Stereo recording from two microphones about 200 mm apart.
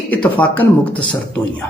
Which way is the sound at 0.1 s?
5° left (ahead or behind).